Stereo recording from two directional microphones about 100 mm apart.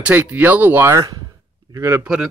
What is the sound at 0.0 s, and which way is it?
Speech, 15° right (ahead or behind).